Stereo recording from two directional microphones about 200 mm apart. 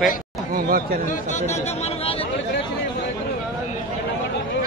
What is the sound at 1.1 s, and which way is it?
Speech, 35° left (ahead or behind).